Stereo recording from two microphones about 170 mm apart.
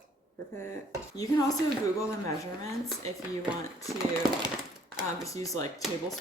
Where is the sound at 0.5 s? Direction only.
15° left (ahead or behind).